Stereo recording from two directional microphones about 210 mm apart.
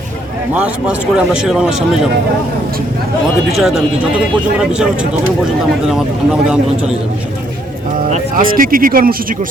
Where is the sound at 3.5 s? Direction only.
Centre (ahead or behind).